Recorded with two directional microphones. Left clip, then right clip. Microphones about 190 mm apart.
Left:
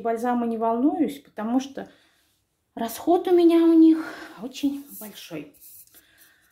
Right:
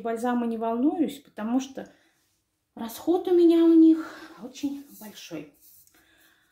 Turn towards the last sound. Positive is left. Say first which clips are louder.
# left 2 dB
turn(degrees=35)  # may be behind; listen again after turning